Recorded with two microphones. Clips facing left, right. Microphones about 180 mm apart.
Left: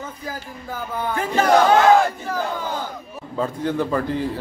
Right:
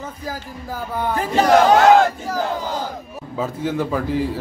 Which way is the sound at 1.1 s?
35° right (ahead or behind).